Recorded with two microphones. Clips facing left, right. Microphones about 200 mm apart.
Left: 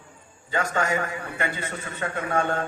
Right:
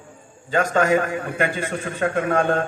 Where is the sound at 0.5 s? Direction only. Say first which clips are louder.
Right 7 dB; 50° right (ahead or behind).